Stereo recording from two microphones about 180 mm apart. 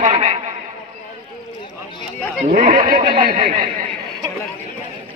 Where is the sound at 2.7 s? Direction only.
45° right (ahead or behind).